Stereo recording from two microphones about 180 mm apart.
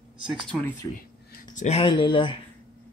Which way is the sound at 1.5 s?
35° left (ahead or behind).